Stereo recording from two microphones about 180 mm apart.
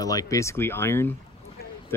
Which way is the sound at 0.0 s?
20° left (ahead or behind).